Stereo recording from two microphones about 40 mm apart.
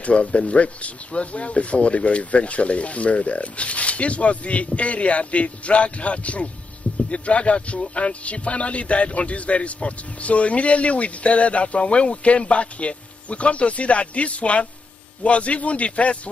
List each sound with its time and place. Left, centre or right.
0.0 s speech: left